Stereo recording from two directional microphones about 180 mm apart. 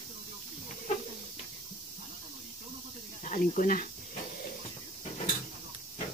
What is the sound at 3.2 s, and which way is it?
Speech, 45° left (ahead or behind).